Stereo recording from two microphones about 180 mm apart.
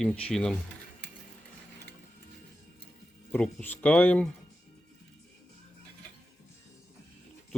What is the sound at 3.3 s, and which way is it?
Speech, 5° left (ahead or behind).